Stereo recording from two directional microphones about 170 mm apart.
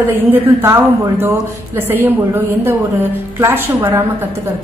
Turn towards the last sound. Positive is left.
turn(degrees=-15)  # may be behind; listen again after turning